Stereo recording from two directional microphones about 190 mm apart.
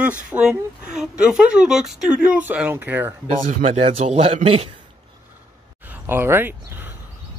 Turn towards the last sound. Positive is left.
turn(degrees=-10)  # may be behind; listen again after turning